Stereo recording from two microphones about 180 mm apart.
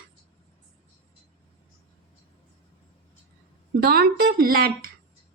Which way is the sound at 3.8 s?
60° right (ahead or behind).